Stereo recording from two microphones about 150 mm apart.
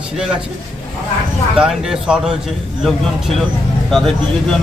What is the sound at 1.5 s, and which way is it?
Speech, 5° right (ahead or behind).